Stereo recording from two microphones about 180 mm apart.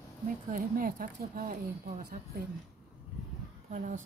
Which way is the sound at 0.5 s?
55° right (ahead or behind).